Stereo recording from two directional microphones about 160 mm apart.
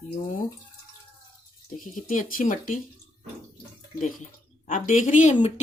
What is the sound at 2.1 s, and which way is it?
Speech, 55° left (ahead or behind).